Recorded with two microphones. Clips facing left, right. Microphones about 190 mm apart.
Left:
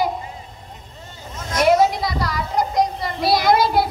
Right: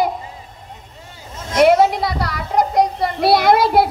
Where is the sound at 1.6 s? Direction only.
60° right (ahead or behind).